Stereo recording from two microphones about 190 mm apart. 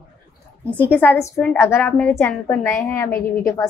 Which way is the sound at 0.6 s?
10° left (ahead or behind).